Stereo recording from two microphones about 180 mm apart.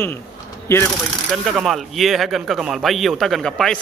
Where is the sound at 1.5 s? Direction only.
Centre (ahead or behind).